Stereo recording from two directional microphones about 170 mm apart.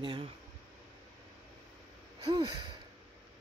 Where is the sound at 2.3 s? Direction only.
25° right (ahead or behind).